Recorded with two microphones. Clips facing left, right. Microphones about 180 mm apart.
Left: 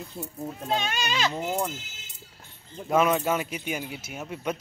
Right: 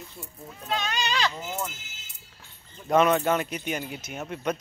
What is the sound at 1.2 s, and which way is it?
Speech, 30° left (ahead or behind).